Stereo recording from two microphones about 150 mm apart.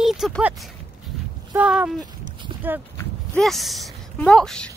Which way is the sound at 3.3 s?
Centre (ahead or behind).